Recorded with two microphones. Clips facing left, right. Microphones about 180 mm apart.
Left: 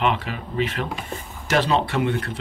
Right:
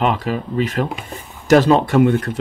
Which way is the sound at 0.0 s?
40° right (ahead or behind).